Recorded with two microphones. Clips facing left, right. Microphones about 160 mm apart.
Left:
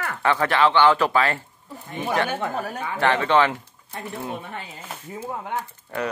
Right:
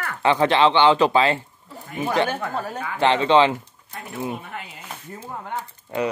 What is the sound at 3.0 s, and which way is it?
Speech, 20° right (ahead or behind).